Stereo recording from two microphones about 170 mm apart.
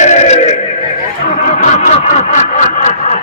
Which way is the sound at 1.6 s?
45° left (ahead or behind).